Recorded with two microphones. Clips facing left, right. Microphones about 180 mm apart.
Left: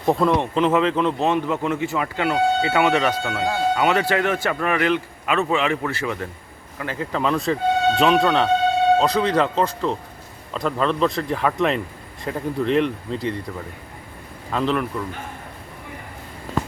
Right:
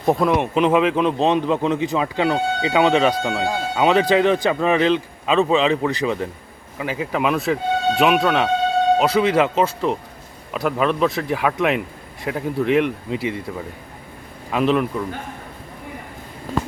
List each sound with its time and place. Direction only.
0.0 s speech: 15° right (ahead or behind)
14.5 s speech: 15° right (ahead or behind)